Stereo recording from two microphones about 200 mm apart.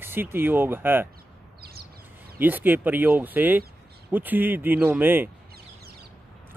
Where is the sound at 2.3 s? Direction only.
10° right (ahead or behind).